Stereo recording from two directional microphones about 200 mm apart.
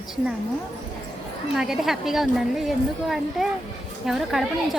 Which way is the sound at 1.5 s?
Centre (ahead or behind).